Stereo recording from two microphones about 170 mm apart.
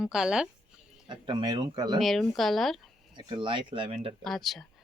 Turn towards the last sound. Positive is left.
turn(degrees=0)  # may be behind; listen again after turning